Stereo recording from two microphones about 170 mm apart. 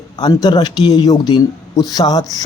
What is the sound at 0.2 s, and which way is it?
Speech, 25° left (ahead or behind).